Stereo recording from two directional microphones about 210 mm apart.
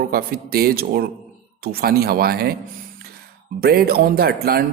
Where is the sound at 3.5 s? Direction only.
45° right (ahead or behind).